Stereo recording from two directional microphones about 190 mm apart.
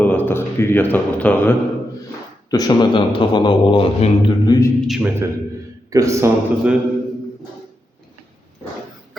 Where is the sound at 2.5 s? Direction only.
20° left (ahead or behind).